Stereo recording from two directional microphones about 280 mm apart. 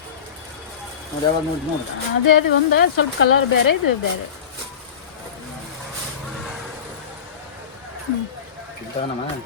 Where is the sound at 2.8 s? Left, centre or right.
Left.